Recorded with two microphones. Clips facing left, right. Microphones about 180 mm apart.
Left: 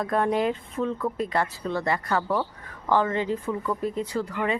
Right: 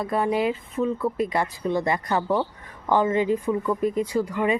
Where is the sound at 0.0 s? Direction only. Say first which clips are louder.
Right 1 dB; 5° right (ahead or behind).